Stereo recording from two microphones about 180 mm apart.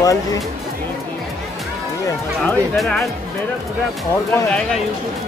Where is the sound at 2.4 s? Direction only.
Centre (ahead or behind).